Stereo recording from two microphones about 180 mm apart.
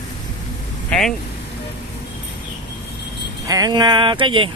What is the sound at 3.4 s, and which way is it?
Speech, 20° right (ahead or behind).